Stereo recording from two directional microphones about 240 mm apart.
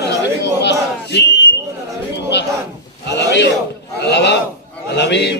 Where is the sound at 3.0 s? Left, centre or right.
Left.